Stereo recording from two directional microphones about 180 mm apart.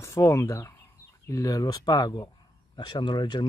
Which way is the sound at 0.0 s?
15° left (ahead or behind).